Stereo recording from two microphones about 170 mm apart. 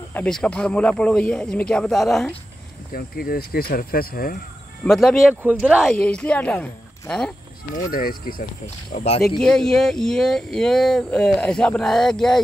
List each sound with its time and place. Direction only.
0.1 s speech: 5° left (ahead or behind)
2.9 s speech: 60° left (ahead or behind)
4.8 s speech: centre (ahead or behind)
5.3 s speech: 10° right (ahead or behind)
7.7 s speech: 60° left (ahead or behind)
9.4 s speech: 5° left (ahead or behind)